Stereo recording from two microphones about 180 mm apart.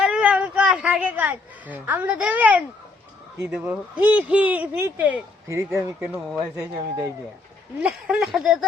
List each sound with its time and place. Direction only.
0.0 s a man's voice: 5° right (ahead or behind)
7.8 s speech: 5° right (ahead or behind)